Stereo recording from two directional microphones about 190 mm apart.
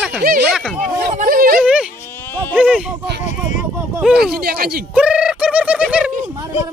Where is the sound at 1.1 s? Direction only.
50° right (ahead or behind).